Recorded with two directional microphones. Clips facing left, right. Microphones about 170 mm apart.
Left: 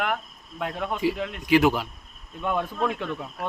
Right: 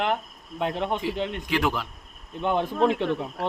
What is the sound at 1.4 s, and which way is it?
Speech, 10° left (ahead or behind).